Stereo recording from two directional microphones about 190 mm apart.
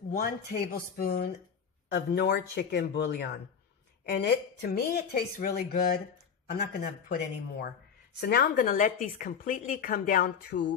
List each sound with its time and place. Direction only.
0.1 s a woman's voice: 50° left (ahead or behind)
1.9 s a woman's voice: 60° left (ahead or behind)